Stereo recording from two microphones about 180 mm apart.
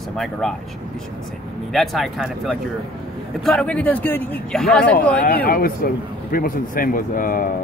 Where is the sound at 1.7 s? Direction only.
Centre (ahead or behind).